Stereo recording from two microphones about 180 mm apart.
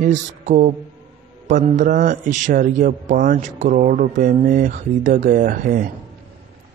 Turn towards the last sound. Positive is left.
turn(degrees=-50)  # may be behind; listen again after turning